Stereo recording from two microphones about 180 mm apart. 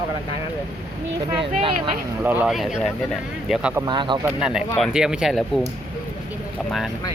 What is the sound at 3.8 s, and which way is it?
Speech, 25° right (ahead or behind).